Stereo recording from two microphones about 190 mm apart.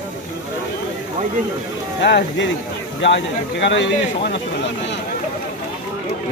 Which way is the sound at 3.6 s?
70° left (ahead or behind).